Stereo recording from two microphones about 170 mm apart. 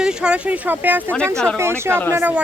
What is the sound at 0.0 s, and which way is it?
A child's voice, 5° right (ahead or behind).